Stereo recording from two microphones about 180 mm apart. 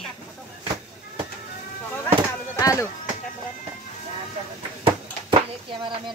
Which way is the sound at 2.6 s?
20° left (ahead or behind).